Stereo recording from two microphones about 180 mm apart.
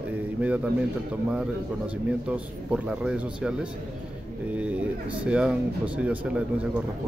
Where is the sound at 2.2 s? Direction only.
5° right (ahead or behind).